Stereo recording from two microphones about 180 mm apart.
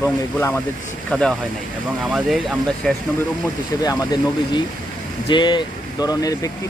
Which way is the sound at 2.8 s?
5° left (ahead or behind).